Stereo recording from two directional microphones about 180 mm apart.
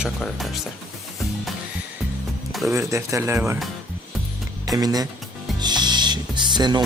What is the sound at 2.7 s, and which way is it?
Speech, 15° right (ahead or behind).